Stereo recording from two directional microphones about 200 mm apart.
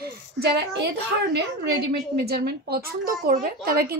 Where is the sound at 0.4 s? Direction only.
55° right (ahead or behind).